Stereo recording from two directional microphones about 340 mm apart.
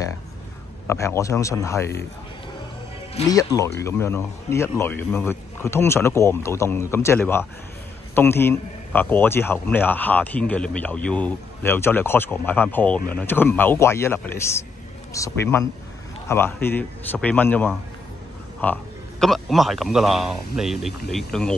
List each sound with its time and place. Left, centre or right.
0.8 s speech: centre
3.2 s a man's voice: centre